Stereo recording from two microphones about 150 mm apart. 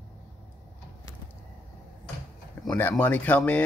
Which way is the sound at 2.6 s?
10° left (ahead or behind).